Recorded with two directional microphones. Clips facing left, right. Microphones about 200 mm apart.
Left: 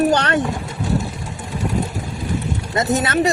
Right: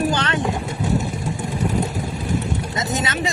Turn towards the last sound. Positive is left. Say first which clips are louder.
# left 6 dB
turn(degrees=60)  # may be behind; listen again after turning